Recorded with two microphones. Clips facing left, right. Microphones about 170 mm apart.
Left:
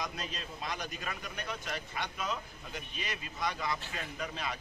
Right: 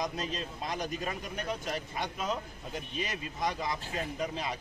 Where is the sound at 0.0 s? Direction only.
35° right (ahead or behind).